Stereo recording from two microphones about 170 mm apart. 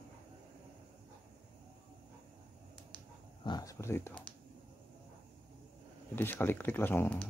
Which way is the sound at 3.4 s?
20° left (ahead or behind).